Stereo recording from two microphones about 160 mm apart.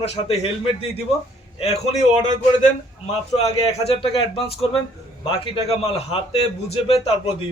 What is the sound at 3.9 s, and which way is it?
Speech, 35° left (ahead or behind).